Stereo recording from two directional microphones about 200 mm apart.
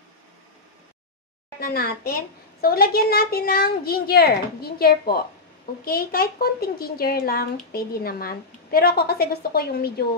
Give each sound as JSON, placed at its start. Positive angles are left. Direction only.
{"t": 1.6, "sound": "speech", "side_deg": 50}